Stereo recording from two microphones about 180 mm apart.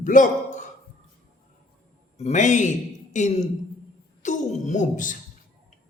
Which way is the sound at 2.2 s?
40° left (ahead or behind).